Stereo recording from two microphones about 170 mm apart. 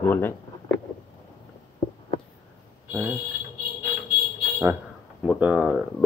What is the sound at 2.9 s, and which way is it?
Speech, 15° right (ahead or behind).